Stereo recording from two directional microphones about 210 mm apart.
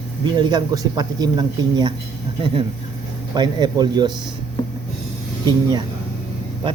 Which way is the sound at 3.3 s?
20° right (ahead or behind).